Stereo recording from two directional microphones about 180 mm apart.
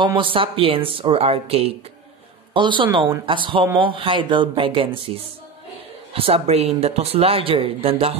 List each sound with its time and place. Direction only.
0.0 s speech: 30° right (ahead or behind)